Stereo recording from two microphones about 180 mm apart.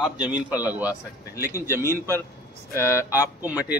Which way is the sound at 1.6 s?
15° right (ahead or behind).